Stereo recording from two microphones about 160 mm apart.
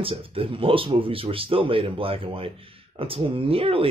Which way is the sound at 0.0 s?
35° right (ahead or behind).